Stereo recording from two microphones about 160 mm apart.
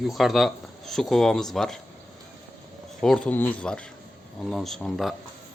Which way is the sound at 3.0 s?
5° left (ahead or behind).